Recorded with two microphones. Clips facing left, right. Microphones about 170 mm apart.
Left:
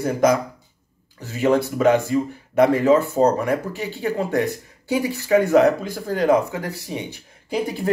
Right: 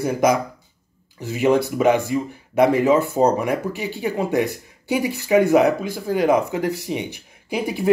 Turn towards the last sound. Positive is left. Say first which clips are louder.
# even
turn(degrees=-10)  # may be behind; listen again after turning